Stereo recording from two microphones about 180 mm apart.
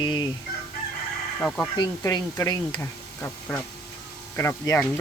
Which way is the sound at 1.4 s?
5° left (ahead or behind).